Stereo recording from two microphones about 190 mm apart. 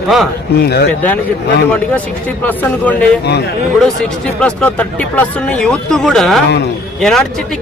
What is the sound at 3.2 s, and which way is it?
Speech, 60° left (ahead or behind).